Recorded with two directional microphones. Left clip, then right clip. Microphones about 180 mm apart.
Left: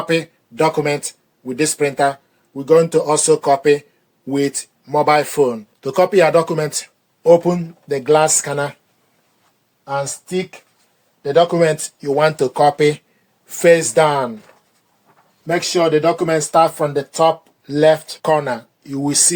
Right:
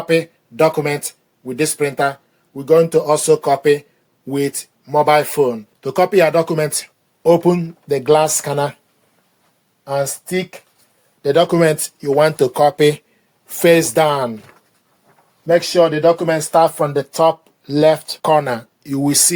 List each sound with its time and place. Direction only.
0.1 s speech: 25° right (ahead or behind)
7.2 s speech: 40° right (ahead or behind)
9.8 s speech: 80° right
11.2 s speech: 60° right (ahead or behind); by 13.0 s 45° right (ahead or behind)
13.5 s speech: 30° right (ahead or behind)
15.4 s speech: 40° right (ahead or behind)